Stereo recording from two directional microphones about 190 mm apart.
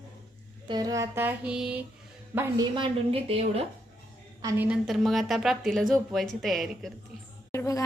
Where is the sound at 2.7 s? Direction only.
30° right (ahead or behind).